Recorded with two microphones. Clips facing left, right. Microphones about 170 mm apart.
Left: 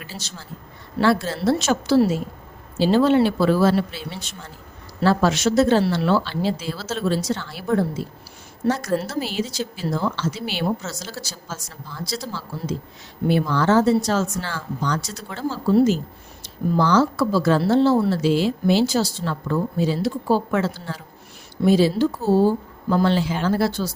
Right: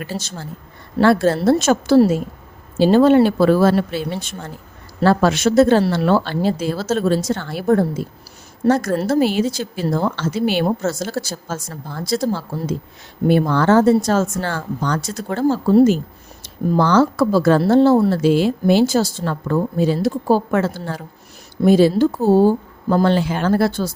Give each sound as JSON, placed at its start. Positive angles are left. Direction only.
{"t": 0.0, "sound": "speech", "side_deg": -50}